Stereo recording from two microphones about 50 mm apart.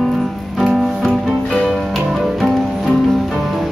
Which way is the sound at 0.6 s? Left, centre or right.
Centre.